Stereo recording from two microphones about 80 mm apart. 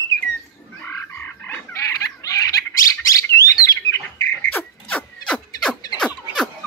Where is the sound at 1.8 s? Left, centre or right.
Left.